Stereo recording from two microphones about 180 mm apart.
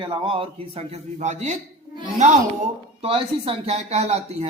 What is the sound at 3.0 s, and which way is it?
A man's voice, 30° right (ahead or behind).